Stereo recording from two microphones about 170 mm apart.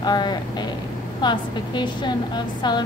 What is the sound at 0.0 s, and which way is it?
A woman's voice, 25° left (ahead or behind).